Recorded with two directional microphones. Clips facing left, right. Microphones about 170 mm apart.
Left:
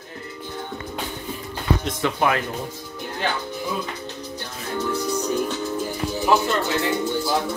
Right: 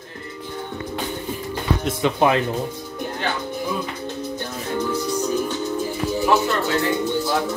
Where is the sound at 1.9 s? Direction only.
15° right (ahead or behind).